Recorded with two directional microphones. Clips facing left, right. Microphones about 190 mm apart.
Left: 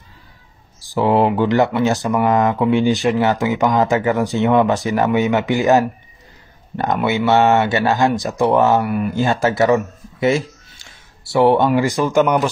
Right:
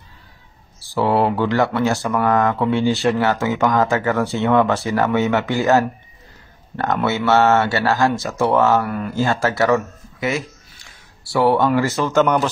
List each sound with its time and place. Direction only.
0.7 s speech: 15° left (ahead or behind)
10.2 s speech: 30° left (ahead or behind); by 12.4 s 10° left (ahead or behind)